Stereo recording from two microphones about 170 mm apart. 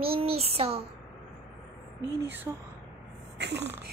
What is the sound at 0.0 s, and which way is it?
Child singing, 35° right (ahead or behind).